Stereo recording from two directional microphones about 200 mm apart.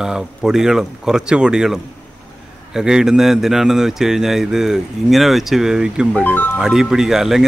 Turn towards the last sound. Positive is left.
turn(degrees=0)  # may be behind; listen again after turning